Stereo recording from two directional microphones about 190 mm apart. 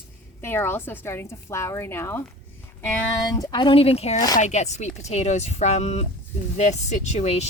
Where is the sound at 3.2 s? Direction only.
20° left (ahead or behind).